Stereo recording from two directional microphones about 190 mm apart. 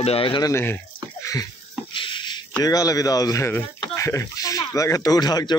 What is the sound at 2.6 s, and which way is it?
Speech, 20° left (ahead or behind).